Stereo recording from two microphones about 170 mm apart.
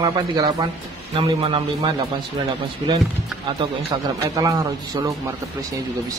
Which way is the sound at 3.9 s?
25° right (ahead or behind).